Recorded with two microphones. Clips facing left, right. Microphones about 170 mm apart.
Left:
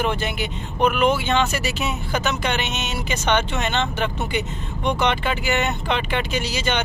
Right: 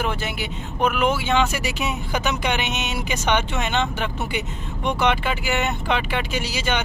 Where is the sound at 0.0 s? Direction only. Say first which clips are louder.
Left 2 dB; 5° right (ahead or behind).